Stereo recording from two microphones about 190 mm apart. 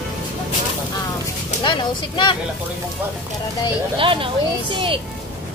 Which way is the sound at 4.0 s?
25° right (ahead or behind).